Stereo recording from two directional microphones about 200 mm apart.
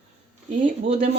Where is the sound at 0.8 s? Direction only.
30° right (ahead or behind).